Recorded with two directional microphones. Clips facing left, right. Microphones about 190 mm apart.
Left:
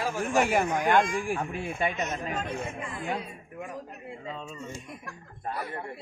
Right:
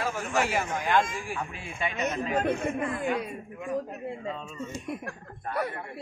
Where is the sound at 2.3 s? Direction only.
60° right (ahead or behind).